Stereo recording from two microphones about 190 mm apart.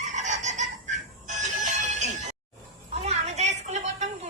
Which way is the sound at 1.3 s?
40° right (ahead or behind).